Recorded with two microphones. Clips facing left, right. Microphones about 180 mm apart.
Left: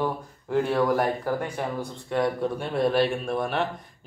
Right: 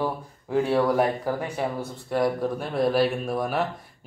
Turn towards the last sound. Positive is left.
turn(degrees=-5)  # may be behind; listen again after turning